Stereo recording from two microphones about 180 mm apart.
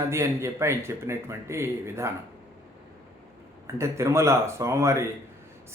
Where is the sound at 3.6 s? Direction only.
15° right (ahead or behind).